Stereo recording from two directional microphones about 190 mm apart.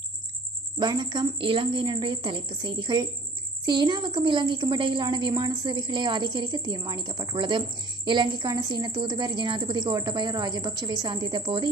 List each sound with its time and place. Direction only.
0.7 s a woman's voice: 25° right (ahead or behind)